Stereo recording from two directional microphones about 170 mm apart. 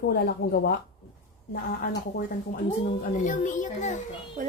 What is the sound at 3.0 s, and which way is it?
A child's voice, 50° left (ahead or behind).